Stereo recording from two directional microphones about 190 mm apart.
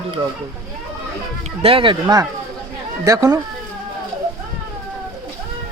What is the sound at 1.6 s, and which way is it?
Speech, 30° right (ahead or behind).